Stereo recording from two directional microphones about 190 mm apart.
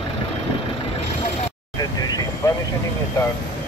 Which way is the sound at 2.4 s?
20° left (ahead or behind).